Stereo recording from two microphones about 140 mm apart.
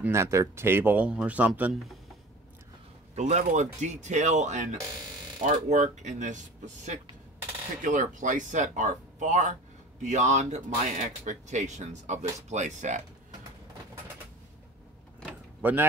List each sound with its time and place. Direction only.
0.0 s speech: 20° right (ahead or behind); by 2.0 s centre (ahead or behind)
3.2 s speech: 60° right (ahead or behind)
15.6 s speech: 15° right (ahead or behind)